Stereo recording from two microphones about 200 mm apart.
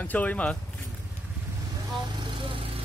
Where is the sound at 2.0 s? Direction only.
25° right (ahead or behind).